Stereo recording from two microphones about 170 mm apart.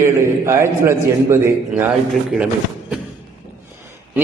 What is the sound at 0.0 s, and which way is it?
A man's voice, 15° right (ahead or behind).